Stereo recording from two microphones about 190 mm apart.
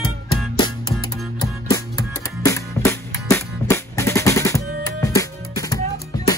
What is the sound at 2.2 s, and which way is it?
Music, 15° left (ahead or behind).